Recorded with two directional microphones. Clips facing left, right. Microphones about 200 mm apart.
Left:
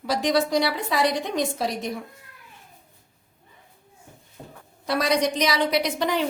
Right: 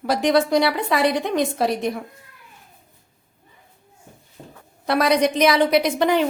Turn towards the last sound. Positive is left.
turn(degrees=-55)  # may be behind; listen again after turning